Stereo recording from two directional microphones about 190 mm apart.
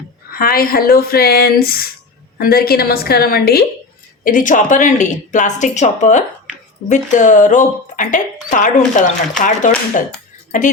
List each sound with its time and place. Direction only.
0.3 s speech: 50° left (ahead or behind)